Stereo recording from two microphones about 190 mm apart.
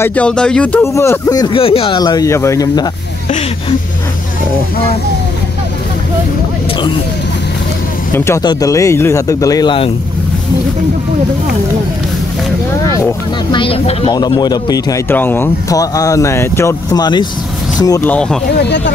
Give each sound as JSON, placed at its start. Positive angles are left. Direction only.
{"t": 0.0, "sound": "speech", "side_deg": 5}
{"t": 8.1, "sound": "speech", "side_deg": 15}
{"t": 12.8, "sound": "speech", "side_deg": 15}
{"t": 18.5, "sound": "speech", "side_deg": 65}